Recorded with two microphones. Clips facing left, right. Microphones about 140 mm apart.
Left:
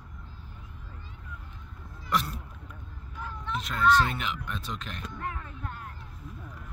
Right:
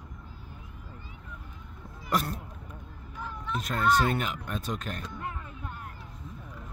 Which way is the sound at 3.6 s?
45° right (ahead or behind).